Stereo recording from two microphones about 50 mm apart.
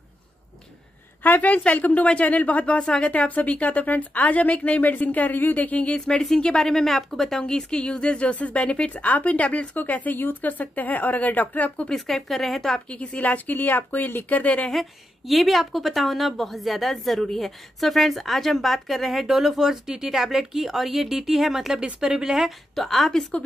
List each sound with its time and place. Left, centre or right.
1.2 s speech: left; by 3.1 s centre
3.1 s speech: left
11.9 s speech: centre
12.8 s speech: left
14.7 s a woman's voice: centre
22.8 s a woman's voice: centre